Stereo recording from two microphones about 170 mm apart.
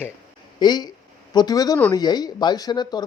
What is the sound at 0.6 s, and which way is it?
Speech, 25° left (ahead or behind).